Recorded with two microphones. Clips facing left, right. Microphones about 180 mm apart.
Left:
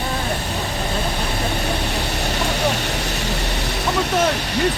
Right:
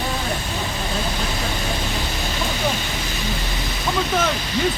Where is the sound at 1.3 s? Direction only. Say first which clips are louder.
Left 3 dB; 65° left (ahead or behind).